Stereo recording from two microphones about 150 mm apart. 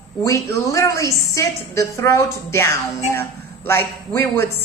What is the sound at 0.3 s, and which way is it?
A woman's voice, 20° left (ahead or behind).